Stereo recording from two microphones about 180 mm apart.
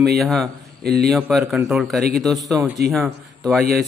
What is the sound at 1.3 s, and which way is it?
A man's voice, centre (ahead or behind).